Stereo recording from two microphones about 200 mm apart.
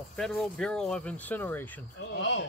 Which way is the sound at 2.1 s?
60° left (ahead or behind).